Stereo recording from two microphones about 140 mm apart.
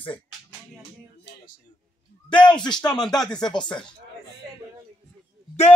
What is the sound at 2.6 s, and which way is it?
Speech, 30° left (ahead or behind).